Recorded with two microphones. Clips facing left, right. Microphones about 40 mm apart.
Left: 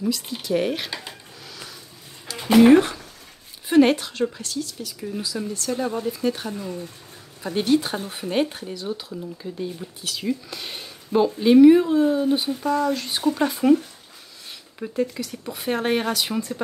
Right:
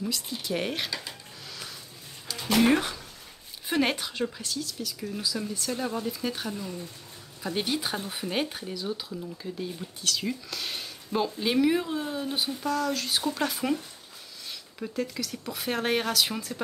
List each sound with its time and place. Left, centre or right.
0.4 s speech: centre
0.8 s speech: left
2.5 s speech: centre
3.6 s speech: centre
6.5 s speech: left
7.5 s speech: centre
14.8 s speech: centre